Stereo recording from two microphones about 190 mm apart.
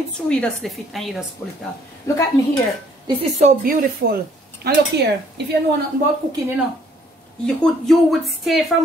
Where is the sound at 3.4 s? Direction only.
50° right (ahead or behind).